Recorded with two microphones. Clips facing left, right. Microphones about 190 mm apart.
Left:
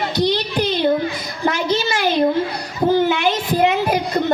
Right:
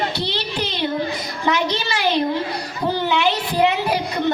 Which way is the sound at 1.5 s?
45° left (ahead or behind).